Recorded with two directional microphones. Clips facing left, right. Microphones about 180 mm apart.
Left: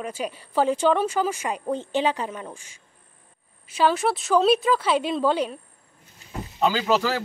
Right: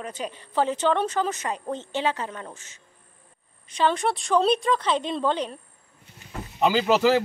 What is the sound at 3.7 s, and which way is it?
A woman's voice, 5° left (ahead or behind).